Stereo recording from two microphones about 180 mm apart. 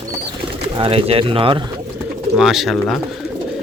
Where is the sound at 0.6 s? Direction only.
30° right (ahead or behind).